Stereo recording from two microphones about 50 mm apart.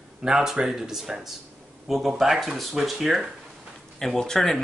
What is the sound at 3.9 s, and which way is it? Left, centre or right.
Speech, centre.